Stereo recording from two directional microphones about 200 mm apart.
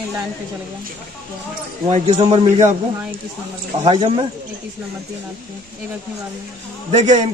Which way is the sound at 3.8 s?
25° right (ahead or behind).